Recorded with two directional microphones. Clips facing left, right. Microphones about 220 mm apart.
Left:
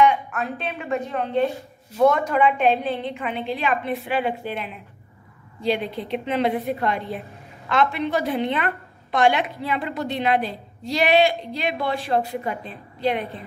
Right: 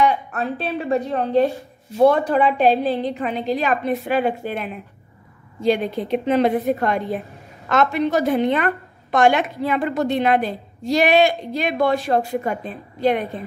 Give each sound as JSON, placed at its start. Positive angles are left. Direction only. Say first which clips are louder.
{"t": 0.0, "sound": "a woman's voice", "louder": "even", "side_deg": -35}